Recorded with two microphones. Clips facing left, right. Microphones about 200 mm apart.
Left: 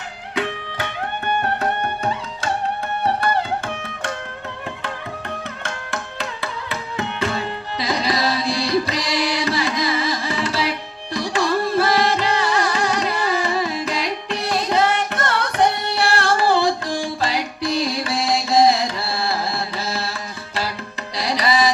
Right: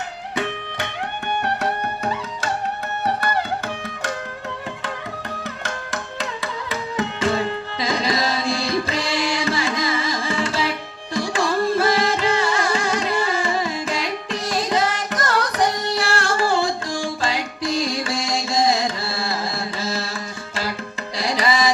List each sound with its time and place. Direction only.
7.8 s music: 35° left (ahead or behind)
15.1 s carnatic music: 30° left (ahead or behind)
16.0 s music: 35° left (ahead or behind)
21.2 s music: 35° left (ahead or behind)